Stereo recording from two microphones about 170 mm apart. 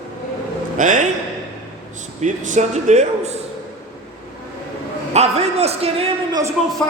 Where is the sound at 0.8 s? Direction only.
50° right (ahead or behind).